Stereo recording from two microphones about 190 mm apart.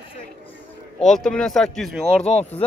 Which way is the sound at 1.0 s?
Centre (ahead or behind).